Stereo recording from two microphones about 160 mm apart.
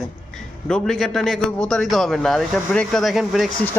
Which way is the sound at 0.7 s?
Centre (ahead or behind).